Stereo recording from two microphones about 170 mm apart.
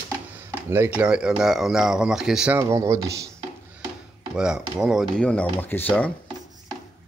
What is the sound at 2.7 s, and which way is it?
Speech, 20° right (ahead or behind).